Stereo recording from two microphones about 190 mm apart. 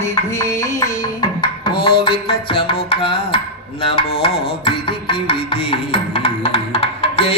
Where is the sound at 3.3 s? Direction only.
30° left (ahead or behind).